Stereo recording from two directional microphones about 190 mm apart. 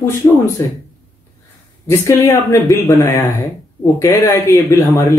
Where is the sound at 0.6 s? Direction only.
15° left (ahead or behind).